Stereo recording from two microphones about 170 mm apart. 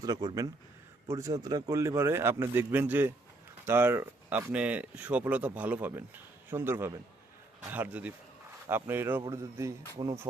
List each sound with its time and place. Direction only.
0.0 s speech: 25° right (ahead or behind)
10.0 s speech: 30° right (ahead or behind)